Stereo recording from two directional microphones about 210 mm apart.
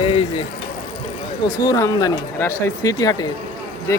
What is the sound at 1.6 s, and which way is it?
Speech, 15° left (ahead or behind).